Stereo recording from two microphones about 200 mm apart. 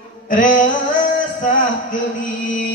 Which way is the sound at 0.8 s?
40° left (ahead or behind).